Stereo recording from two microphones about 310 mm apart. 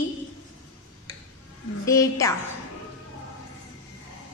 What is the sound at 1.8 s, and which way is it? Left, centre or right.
Speech, centre.